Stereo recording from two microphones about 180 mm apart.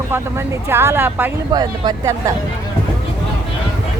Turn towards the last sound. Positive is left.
turn(degrees=-20)  # may be behind; listen again after turning